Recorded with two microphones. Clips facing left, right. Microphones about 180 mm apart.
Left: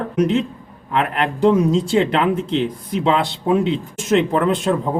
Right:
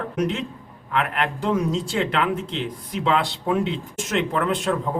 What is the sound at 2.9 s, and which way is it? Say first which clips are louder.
A man's voice: left 3 dB; 25° left (ahead or behind).